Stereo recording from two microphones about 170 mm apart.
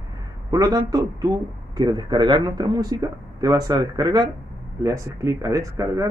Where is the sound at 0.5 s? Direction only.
20° right (ahead or behind).